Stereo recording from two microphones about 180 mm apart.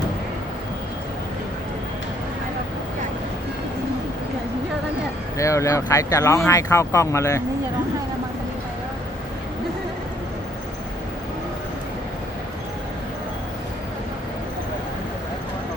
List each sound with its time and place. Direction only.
5.4 s speech: 15° left (ahead or behind)